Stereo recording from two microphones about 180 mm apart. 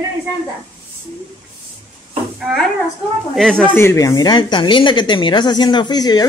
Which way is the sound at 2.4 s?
Centre (ahead or behind).